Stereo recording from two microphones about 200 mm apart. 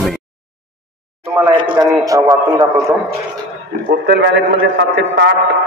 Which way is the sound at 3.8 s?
60° right (ahead or behind).